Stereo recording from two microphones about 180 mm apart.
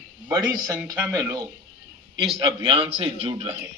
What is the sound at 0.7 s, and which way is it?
Speech, 10° right (ahead or behind).